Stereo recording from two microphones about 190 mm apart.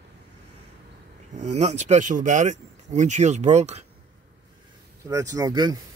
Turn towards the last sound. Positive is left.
turn(degrees=-20)  # may be behind; listen again after turning